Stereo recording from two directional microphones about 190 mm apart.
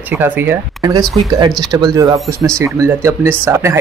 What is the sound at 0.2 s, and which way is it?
Speech, 10° right (ahead or behind).